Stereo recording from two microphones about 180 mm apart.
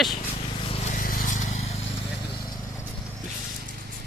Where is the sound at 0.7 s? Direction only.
40° left (ahead or behind).